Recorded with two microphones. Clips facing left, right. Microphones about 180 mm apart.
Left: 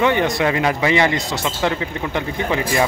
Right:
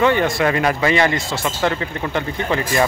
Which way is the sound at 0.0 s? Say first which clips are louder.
Right 1 dB; 20° left (ahead or behind).